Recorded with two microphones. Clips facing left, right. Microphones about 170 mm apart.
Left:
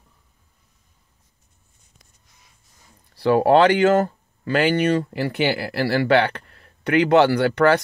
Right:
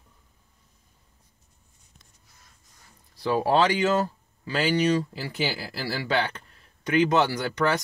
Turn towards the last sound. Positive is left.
turn(degrees=65)  # may be behind; listen again after turning